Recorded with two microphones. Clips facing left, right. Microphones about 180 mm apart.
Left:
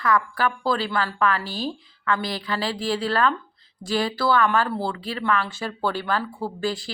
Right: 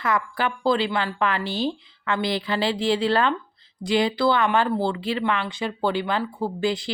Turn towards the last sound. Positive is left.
turn(degrees=-20)  # may be behind; listen again after turning